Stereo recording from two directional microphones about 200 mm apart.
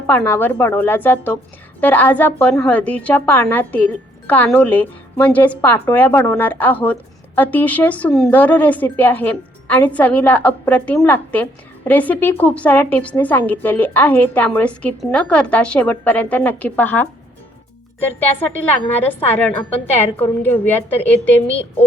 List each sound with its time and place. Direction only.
0.1 s a woman's voice: 10° left (ahead or behind)